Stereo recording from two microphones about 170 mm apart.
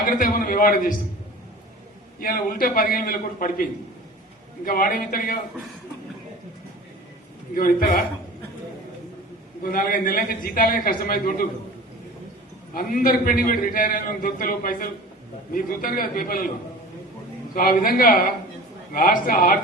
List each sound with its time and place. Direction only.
0.0 s a man's voice: 55° left (ahead or behind)
2.1 s a man's voice: 60° left (ahead or behind)
4.6 s a man's voice: 55° left (ahead or behind)
7.5 s a man's voice: 55° left (ahead or behind)
9.7 s a man's voice: 55° left (ahead or behind)
12.7 s a man's voice: 55° left (ahead or behind)
17.5 s a man's voice: 60° left (ahead or behind)